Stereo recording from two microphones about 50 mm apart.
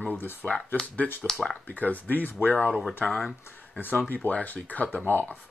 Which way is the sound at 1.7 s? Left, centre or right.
Left.